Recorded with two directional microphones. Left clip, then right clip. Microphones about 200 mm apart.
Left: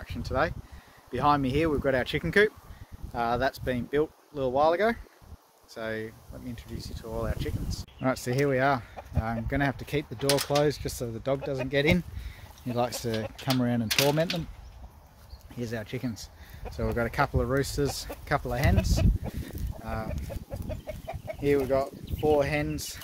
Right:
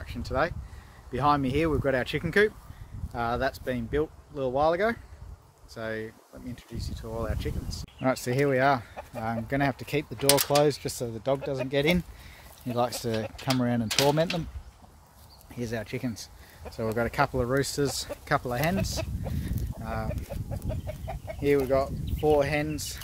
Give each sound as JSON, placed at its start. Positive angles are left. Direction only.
{"t": 0.0, "sound": "speech", "side_deg": 0}
{"t": 3.1, "sound": "speech", "side_deg": 25}
{"t": 5.8, "sound": "speech", "side_deg": 10}
{"t": 15.5, "sound": "speech", "side_deg": -10}
{"t": 19.4, "sound": "a sound", "side_deg": -10}
{"t": 20.8, "sound": "chicken", "side_deg": 20}
{"t": 21.4, "sound": "speech", "side_deg": -15}